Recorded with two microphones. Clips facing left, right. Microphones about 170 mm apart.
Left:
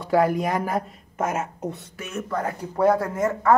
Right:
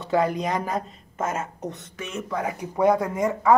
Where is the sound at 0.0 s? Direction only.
20° right (ahead or behind).